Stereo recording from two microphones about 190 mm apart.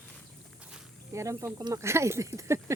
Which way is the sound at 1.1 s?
15° right (ahead or behind).